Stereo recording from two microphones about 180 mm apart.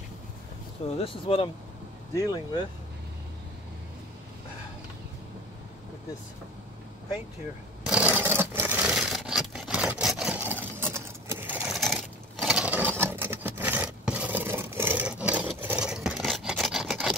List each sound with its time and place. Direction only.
0.9 s speech: 30° left (ahead or behind)
2.1 s speech: 20° left (ahead or behind)
7.8 s a sound: 5° right (ahead or behind)